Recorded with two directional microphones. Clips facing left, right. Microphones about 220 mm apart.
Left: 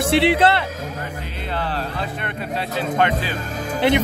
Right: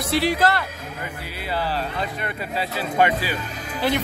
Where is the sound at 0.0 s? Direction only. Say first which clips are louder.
Left 4 dB; 25° left (ahead or behind).